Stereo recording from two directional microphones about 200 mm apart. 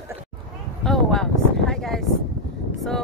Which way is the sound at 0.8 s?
5° left (ahead or behind).